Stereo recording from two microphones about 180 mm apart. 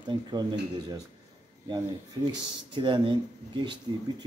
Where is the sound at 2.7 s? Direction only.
25° right (ahead or behind).